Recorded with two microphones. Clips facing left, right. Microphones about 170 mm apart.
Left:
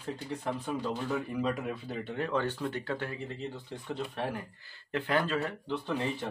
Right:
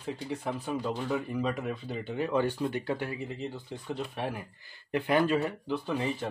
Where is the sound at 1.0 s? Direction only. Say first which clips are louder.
Right 1 dB; centre (ahead or behind).